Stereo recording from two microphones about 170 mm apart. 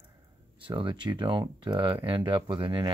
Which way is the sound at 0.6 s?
30° right (ahead or behind).